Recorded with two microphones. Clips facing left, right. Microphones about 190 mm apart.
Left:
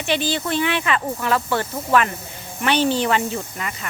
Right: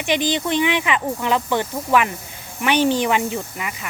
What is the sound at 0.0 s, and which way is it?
Speech, 15° right (ahead or behind).